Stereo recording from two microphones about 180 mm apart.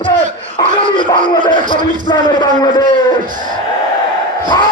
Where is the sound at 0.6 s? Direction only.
20° left (ahead or behind).